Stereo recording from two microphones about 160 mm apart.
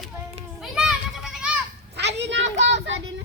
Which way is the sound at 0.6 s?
5° right (ahead or behind).